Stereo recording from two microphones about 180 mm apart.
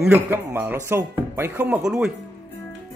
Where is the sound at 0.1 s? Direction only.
15° right (ahead or behind).